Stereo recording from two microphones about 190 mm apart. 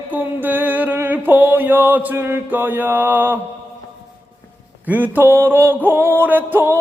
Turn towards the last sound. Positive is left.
turn(degrees=-10)  # may be behind; listen again after turning